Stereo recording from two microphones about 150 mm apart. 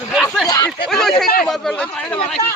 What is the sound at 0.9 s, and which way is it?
Speech, 5° left (ahead or behind).